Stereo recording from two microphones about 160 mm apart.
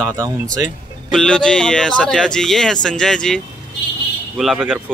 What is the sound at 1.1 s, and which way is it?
Speech, 5° left (ahead or behind).